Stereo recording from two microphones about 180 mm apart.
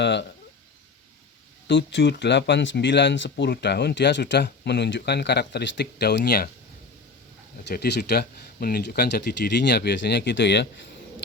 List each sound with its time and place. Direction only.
0.0 s speech: 70° left (ahead or behind)
1.6 s speech: 70° left (ahead or behind)
7.7 s speech: 65° left (ahead or behind)